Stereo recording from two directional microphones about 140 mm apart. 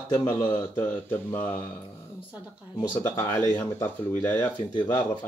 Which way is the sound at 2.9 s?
15° left (ahead or behind).